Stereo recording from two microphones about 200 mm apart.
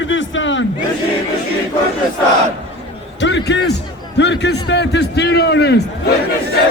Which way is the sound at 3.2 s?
60° left (ahead or behind).